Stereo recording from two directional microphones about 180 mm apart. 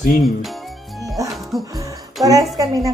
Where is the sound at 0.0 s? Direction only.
50° left (ahead or behind).